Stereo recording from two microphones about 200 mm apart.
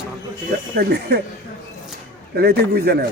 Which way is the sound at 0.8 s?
55° right (ahead or behind).